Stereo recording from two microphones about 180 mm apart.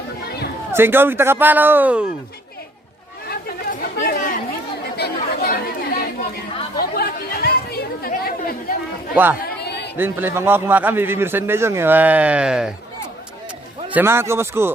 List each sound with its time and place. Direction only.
0.3 s a sound: 65° left (ahead or behind)
0.7 s a man's voice: 10° right (ahead or behind)
3.2 s chatter: 60° left (ahead or behind)
4.9 s chatter: 65° left (ahead or behind)
10.0 s a man's voice: 10° right (ahead or behind)
13.9 s a man's voice: 15° right (ahead or behind)